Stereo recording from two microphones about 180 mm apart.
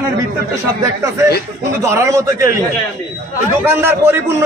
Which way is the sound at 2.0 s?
15° right (ahead or behind).